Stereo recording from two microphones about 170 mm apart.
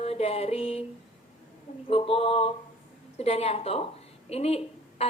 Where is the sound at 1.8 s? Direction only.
35° left (ahead or behind).